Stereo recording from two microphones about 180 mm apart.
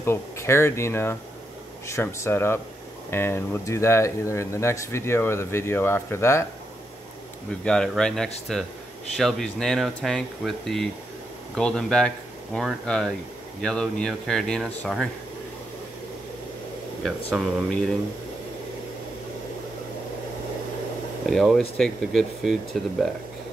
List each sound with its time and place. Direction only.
0.0 s speech: 15° left (ahead or behind)
7.6 s speech: 5° left (ahead or behind)
17.0 s speech: centre (ahead or behind)
21.3 s speech: centre (ahead or behind)